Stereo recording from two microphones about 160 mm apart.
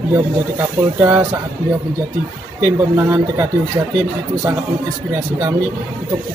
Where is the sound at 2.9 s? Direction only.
15° right (ahead or behind).